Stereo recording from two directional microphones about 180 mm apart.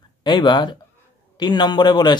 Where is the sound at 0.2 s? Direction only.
25° left (ahead or behind).